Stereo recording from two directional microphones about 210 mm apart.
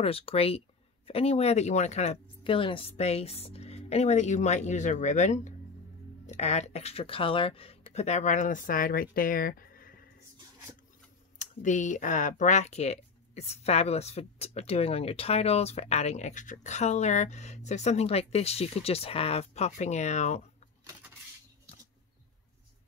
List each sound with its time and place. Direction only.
0.0 s speech: 25° left (ahead or behind); by 10.0 s 45° left (ahead or behind)
11.3 s speech: 35° left (ahead or behind)